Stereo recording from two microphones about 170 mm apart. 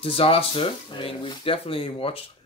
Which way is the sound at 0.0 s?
35° left (ahead or behind).